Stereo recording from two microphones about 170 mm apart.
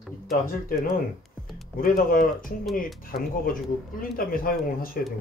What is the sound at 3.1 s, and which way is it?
Speech, 65° left (ahead or behind).